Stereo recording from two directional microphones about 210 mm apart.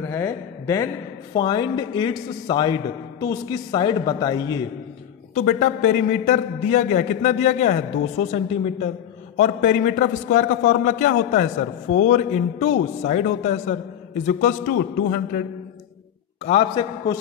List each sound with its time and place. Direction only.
0.1 s a man's voice: 15° left (ahead or behind)
5.3 s a man's voice: 35° left (ahead or behind)
16.4 s a man's voice: 30° left (ahead or behind)